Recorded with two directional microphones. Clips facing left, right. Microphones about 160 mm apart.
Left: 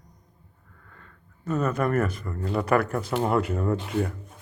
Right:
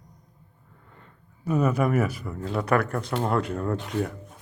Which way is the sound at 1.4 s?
10° right (ahead or behind).